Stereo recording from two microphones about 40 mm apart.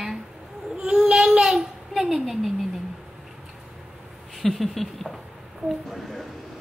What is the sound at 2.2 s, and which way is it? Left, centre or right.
Speech, centre.